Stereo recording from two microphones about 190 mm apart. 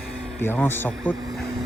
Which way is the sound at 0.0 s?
5° left (ahead or behind).